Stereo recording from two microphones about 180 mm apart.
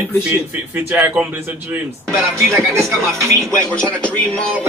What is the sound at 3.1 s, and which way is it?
Speech, 15° right (ahead or behind).